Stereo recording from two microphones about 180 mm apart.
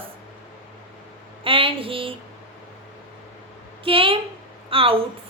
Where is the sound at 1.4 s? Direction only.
30° right (ahead or behind).